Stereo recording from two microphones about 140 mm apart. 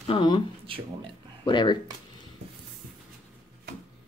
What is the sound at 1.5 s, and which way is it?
Speech, 35° left (ahead or behind).